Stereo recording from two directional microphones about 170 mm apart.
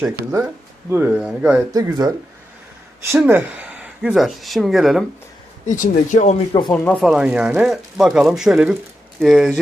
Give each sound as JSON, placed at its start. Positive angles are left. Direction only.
{"t": 0.9, "sound": "speech", "side_deg": -15}
{"t": 1.7, "sound": "speech", "side_deg": -20}
{"t": 5.6, "sound": "speech", "side_deg": 50}
{"t": 6.5, "sound": "speech", "side_deg": 25}
{"t": 6.8, "sound": "speech", "side_deg": 0}